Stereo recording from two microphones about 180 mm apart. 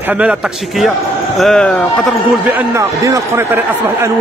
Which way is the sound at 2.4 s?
15° right (ahead or behind).